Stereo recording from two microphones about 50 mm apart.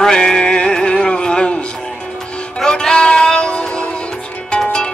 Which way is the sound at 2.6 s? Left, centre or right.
Centre.